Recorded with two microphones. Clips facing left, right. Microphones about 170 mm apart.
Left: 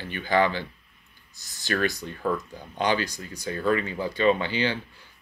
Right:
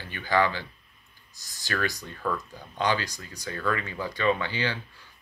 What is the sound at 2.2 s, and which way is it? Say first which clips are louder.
Speech: left 3 dB; 50° left (ahead or behind).